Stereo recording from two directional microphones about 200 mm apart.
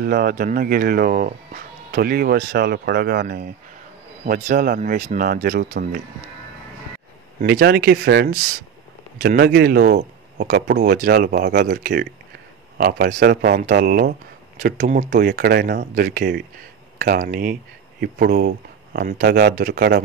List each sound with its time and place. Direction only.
0.0 s speech: 50° right (ahead or behind)
7.4 s speech: 50° right (ahead or behind)